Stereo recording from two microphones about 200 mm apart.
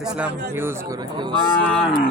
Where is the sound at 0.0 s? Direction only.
5° right (ahead or behind).